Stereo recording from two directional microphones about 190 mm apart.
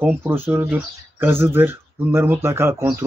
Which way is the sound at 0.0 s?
10° right (ahead or behind).